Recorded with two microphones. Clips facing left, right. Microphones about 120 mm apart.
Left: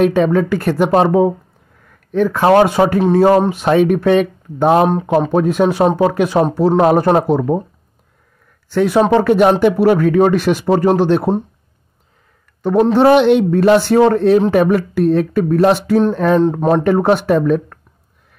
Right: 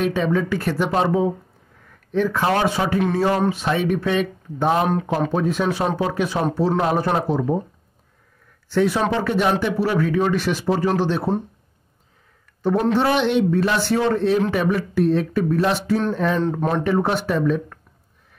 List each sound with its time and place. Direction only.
0.0 s speech: 55° left (ahead or behind)
8.6 s speech: 50° left (ahead or behind)
12.9 s speech: 55° left (ahead or behind)
16.4 s speech: 40° left (ahead or behind)
16.8 s speech: 55° left (ahead or behind)